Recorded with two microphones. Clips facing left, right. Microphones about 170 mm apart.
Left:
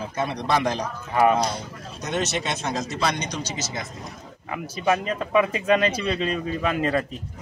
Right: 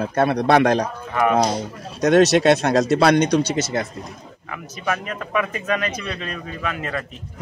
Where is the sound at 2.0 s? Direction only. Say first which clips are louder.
Right 13 dB; 70° right (ahead or behind).